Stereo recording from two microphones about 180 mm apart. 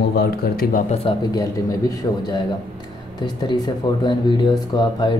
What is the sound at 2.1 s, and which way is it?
Speech, 20° left (ahead or behind).